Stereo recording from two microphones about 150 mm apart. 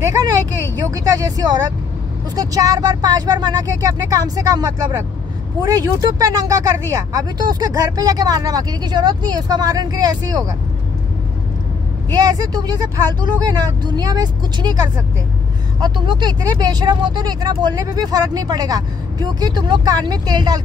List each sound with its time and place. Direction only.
0.0 s vehicle: 20° right (ahead or behind)
0.9 s speech: 25° right (ahead or behind)
12.1 s speech: 25° right (ahead or behind)
15.8 s speech: 30° right (ahead or behind)